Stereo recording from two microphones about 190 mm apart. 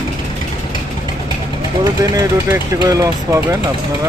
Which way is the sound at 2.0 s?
20° right (ahead or behind).